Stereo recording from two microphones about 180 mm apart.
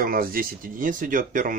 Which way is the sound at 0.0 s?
55° right (ahead or behind).